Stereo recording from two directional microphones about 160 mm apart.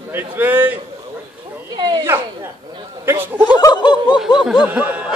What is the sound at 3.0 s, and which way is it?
Speech, 15° right (ahead or behind).